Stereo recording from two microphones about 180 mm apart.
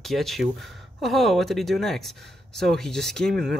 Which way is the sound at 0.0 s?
Centre (ahead or behind).